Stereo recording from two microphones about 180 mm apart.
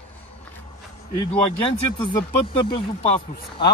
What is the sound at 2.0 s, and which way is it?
Speech, 25° left (ahead or behind).